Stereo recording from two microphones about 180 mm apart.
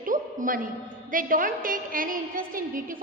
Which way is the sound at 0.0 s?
50° right (ahead or behind).